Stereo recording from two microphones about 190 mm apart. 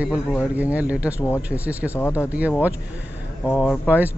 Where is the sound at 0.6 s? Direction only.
10° right (ahead or behind).